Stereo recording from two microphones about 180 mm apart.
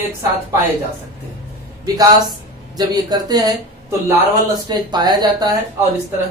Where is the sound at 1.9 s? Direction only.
20° right (ahead or behind).